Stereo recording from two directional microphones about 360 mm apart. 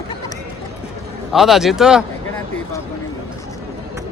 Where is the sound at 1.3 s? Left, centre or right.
Centre.